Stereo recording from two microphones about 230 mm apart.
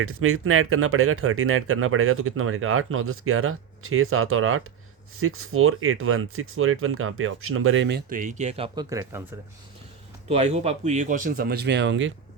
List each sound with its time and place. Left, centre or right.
0.0 s speech: right; by 9.2 s centre
10.2 s speech: right